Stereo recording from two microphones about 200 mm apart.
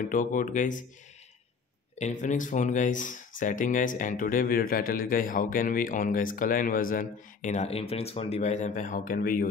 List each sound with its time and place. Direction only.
0.0 s speech: 40° left (ahead or behind)
2.0 s speech: 35° left (ahead or behind)